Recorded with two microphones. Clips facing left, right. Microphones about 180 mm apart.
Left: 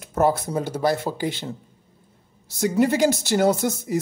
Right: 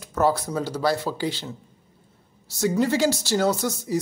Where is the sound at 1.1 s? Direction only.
50° left (ahead or behind).